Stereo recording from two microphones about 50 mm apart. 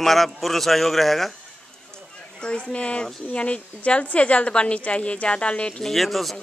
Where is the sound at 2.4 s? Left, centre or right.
Left.